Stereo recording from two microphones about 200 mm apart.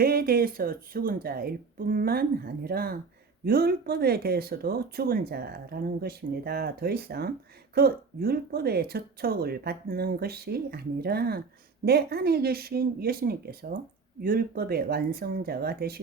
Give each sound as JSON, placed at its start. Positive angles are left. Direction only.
{"t": 0.0, "sound": "speech", "side_deg": -50}